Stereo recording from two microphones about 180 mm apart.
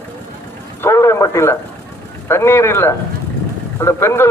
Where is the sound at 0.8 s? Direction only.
15° left (ahead or behind).